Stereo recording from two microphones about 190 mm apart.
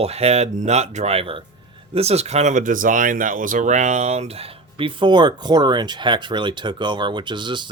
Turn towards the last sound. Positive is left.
turn(degrees=-25)  # may be behind; listen again after turning